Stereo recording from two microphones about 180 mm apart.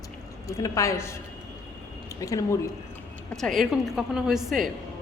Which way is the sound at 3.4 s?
Centre (ahead or behind).